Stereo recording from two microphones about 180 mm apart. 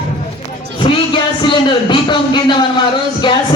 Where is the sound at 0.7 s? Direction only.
25° left (ahead or behind).